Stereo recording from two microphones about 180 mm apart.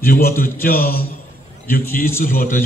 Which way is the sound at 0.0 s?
55° left (ahead or behind).